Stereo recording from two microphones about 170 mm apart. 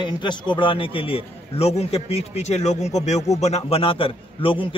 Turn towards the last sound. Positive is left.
turn(degrees=30)  # may be behind; listen again after turning